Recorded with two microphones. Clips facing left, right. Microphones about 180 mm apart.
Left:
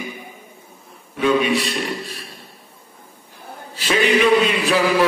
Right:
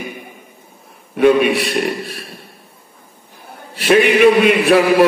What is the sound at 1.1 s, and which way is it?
A man's voice, 60° right (ahead or behind).